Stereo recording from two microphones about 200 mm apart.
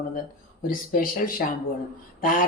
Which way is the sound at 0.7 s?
45° left (ahead or behind).